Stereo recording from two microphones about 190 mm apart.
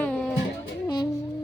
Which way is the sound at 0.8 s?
20° left (ahead or behind).